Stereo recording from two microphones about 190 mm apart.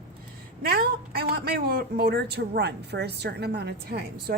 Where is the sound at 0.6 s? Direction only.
55° right (ahead or behind).